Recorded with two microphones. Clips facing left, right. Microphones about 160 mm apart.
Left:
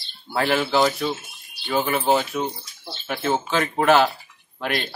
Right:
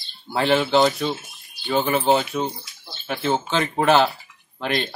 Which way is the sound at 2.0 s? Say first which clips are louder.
Even; 30° right (ahead or behind).